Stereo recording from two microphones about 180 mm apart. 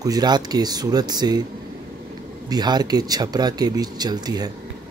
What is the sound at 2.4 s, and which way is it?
Speech, 25° right (ahead or behind).